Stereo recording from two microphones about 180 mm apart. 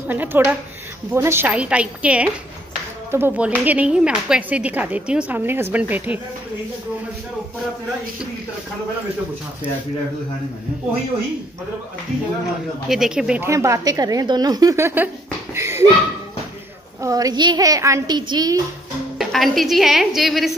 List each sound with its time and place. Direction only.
0.1 s speech: 10° right (ahead or behind)
12.8 s a woman's voice: centre (ahead or behind)
13.5 s a woman's voice: 15° right (ahead or behind)
17.0 s a woman's voice: 20° right (ahead or behind)
19.1 s a woman's voice: centre (ahead or behind)